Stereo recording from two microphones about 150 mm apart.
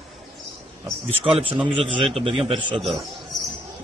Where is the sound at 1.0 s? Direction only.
40° right (ahead or behind).